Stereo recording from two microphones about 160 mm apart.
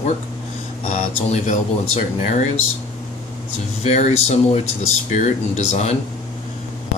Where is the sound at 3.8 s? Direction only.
40° left (ahead or behind).